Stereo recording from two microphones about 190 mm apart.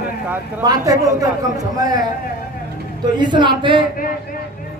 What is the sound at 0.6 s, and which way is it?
A man's voice, 20° right (ahead or behind).